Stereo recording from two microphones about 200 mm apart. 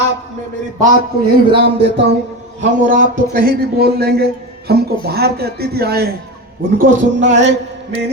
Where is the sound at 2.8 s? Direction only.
45° right (ahead or behind).